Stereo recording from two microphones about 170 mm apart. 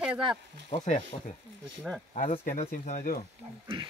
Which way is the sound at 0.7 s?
40° left (ahead or behind).